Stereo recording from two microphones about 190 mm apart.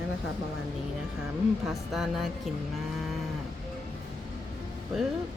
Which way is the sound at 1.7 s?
Centre (ahead or behind).